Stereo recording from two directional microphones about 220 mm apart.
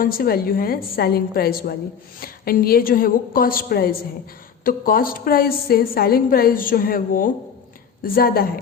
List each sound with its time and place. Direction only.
0.0 s a woman's voice: 40° left (ahead or behind)